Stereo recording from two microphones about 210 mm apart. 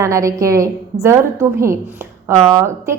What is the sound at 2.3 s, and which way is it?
Speech, 25° right (ahead or behind).